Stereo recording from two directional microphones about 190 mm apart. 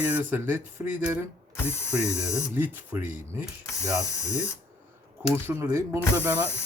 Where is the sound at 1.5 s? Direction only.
10° left (ahead or behind).